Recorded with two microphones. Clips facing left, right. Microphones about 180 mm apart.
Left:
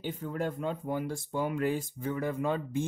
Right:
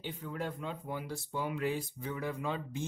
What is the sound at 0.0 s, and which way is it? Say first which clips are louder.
Speech: left 5 dB; 45° left (ahead or behind).